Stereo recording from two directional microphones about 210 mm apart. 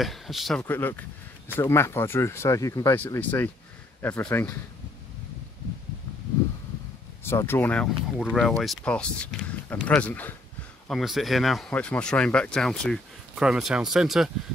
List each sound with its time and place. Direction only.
0.0 s speech: centre (ahead or behind)
7.2 s speech: 10° left (ahead or behind)